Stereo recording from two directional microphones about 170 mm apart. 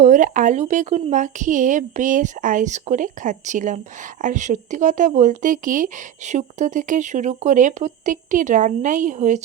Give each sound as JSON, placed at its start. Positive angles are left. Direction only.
{"t": 0.0, "sound": "speech", "side_deg": -50}